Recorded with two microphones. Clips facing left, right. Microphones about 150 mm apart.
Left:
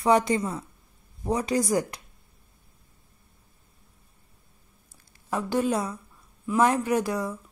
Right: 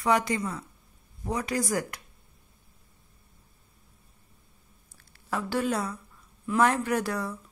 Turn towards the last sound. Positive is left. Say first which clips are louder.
# left 3 dB
turn(degrees=15)  # may be behind; listen again after turning